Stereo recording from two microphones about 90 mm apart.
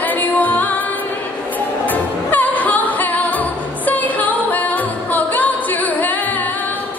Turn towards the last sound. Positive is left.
turn(degrees=20)  # may be behind; listen again after turning